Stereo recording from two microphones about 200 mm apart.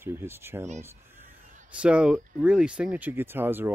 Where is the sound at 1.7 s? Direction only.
5° right (ahead or behind).